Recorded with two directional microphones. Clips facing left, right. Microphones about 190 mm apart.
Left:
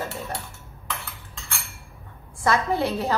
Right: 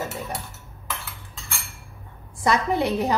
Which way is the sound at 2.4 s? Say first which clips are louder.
Right 1 dB; 15° right (ahead or behind).